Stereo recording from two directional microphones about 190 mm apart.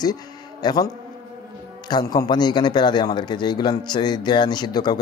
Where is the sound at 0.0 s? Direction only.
20° left (ahead or behind).